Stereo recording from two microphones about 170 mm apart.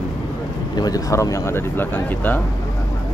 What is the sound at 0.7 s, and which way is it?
Speech, 20° left (ahead or behind).